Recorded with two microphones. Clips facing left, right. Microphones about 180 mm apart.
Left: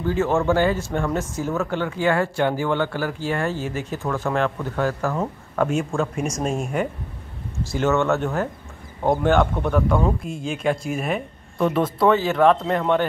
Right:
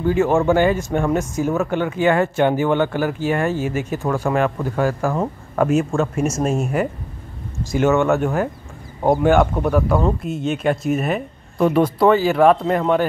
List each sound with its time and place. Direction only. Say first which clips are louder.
0.0 s speech: right 4 dB; 15° right (ahead or behind)
7.7 s speech: right 4 dB; 15° right (ahead or behind)